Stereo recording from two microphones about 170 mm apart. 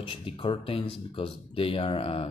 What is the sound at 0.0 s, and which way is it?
Speech, 30° left (ahead or behind).